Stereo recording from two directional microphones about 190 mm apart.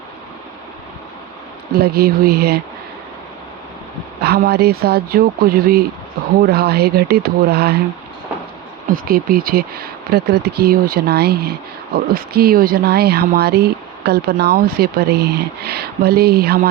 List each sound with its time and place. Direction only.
1.7 s speech: 55° right (ahead or behind)
4.2 s speech: 55° right (ahead or behind)
8.9 s speech: 50° right (ahead or behind)